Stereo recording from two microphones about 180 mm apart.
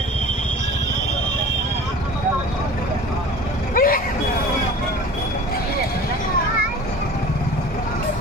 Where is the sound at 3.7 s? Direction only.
50° left (ahead or behind).